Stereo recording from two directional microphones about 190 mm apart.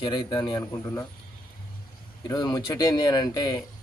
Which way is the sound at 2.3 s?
20° left (ahead or behind).